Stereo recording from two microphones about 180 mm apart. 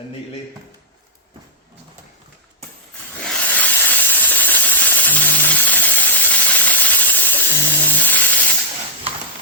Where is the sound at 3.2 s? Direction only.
5° left (ahead or behind).